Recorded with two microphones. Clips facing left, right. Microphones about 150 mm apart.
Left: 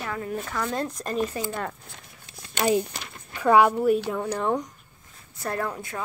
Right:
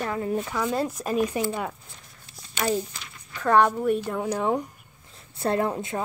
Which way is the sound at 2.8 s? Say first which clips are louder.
Left 4 dB; 65° left (ahead or behind).